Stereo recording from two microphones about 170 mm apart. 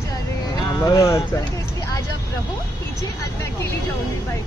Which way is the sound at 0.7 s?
20° left (ahead or behind).